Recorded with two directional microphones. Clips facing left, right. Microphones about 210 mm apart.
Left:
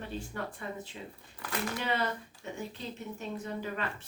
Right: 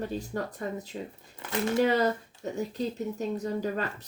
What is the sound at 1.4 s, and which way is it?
Speech, 20° right (ahead or behind).